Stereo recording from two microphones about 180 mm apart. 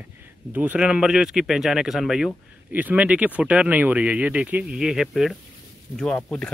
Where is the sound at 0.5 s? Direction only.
10° right (ahead or behind).